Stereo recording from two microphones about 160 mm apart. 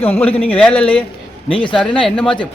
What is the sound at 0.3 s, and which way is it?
Speech, 40° left (ahead or behind).